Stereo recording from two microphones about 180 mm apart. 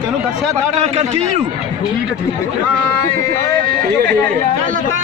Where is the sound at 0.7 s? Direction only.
40° right (ahead or behind).